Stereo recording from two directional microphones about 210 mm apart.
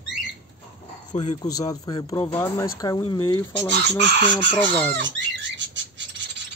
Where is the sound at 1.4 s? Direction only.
15° left (ahead or behind).